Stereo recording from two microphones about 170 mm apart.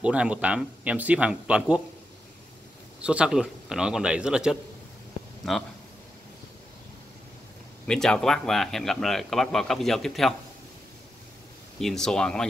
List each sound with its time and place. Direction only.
0.0 s speech: 5° right (ahead or behind)
3.0 s a man's voice: 5° right (ahead or behind)
7.8 s a man's voice: 5° left (ahead or behind)
11.8 s a man's voice: 5° left (ahead or behind)